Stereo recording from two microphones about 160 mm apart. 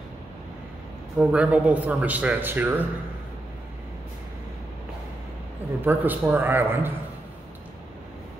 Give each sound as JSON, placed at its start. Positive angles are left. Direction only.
{"t": 1.1, "sound": "speech", "side_deg": -5}
{"t": 5.9, "sound": "speech", "side_deg": -10}